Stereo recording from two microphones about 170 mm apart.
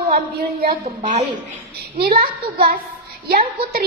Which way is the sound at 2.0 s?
65° right (ahead or behind).